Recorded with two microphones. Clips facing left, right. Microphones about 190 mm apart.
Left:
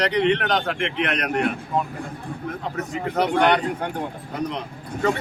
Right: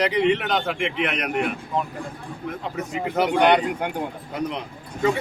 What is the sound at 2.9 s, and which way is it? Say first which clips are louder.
Speech: even; 5° right (ahead or behind).